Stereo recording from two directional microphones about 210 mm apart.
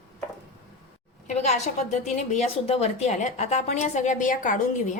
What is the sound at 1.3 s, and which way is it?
A woman's voice, 35° left (ahead or behind).